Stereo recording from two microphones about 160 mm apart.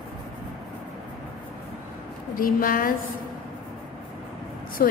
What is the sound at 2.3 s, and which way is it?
Speech, 60° left (ahead or behind).